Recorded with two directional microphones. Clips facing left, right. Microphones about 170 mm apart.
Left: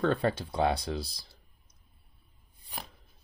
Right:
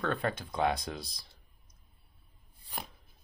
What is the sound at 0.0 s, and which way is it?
Speech, 30° left (ahead or behind).